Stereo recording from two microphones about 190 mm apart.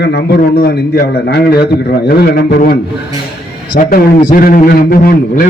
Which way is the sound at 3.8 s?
50° left (ahead or behind).